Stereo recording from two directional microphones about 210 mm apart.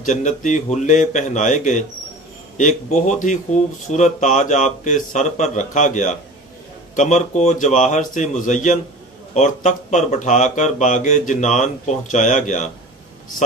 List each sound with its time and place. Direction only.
0.0 s speech: 35° left (ahead or behind)